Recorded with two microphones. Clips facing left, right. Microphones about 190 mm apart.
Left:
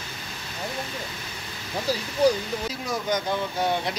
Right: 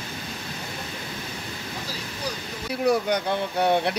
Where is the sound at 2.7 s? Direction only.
60° right (ahead or behind).